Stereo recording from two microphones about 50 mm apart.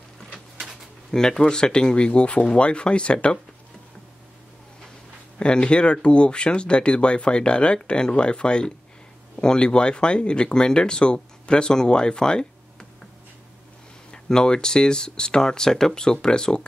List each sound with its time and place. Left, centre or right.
0.3 s printer: centre
1.1 s speech: centre
5.4 s speech: centre
14.1 s speech: centre